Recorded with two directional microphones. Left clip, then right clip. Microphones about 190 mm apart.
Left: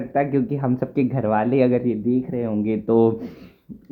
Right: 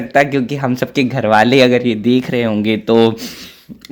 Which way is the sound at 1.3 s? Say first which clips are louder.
Right 10 dB; 30° right (ahead or behind).